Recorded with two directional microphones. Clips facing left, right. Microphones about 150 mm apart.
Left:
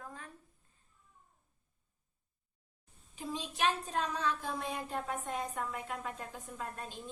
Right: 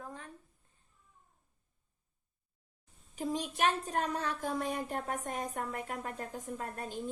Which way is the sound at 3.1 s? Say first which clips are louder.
Right 5 dB; 45° right (ahead or behind).